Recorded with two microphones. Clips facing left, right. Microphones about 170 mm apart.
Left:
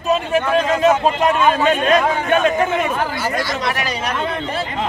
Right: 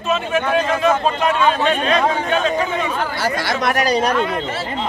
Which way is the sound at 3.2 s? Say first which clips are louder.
Right 1 dB; 70° right (ahead or behind).